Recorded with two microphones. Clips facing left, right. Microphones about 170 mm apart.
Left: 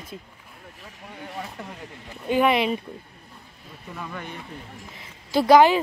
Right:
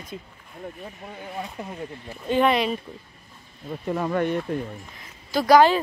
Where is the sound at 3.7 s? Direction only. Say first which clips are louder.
Right 12 dB; 55° right (ahead or behind).